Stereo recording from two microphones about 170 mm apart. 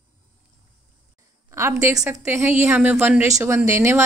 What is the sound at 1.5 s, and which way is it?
Speech, 20° right (ahead or behind).